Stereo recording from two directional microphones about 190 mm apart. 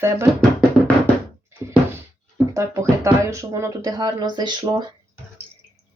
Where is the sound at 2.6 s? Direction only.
15° right (ahead or behind).